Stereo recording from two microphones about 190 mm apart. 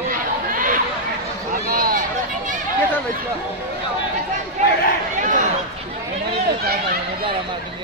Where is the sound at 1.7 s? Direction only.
45° right (ahead or behind).